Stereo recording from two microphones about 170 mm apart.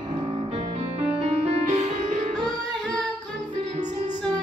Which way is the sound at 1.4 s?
40° right (ahead or behind).